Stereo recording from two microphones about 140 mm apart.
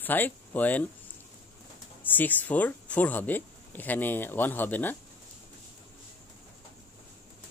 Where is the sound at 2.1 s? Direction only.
10° left (ahead or behind).